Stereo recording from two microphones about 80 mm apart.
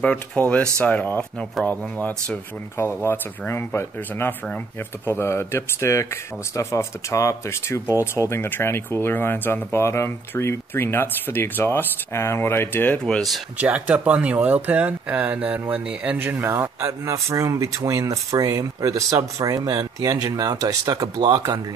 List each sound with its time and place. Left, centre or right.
0.0 s speech: centre
3.1 s speech: left
13.0 s speech: centre
13.6 s speech: centre; by 21.5 s right